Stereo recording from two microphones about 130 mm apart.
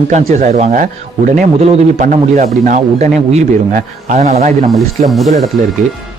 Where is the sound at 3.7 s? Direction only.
90° right.